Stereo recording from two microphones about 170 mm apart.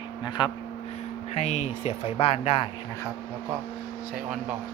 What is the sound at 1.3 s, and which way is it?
Speech, 40° left (ahead or behind).